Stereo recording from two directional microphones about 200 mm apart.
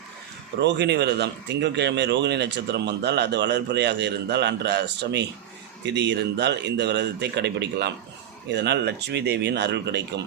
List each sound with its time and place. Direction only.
0.6 s speech: 60° right (ahead or behind)